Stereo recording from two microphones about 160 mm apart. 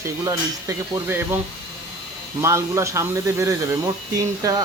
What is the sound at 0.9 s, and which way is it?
Speech, 15° right (ahead or behind).